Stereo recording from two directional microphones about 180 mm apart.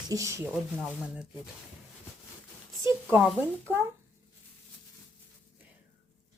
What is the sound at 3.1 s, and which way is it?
Speech, 10° right (ahead or behind).